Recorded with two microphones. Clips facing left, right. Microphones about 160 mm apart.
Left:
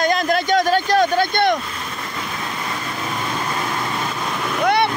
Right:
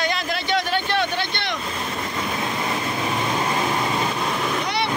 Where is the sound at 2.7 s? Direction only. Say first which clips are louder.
Right 2 dB; 20° right (ahead or behind).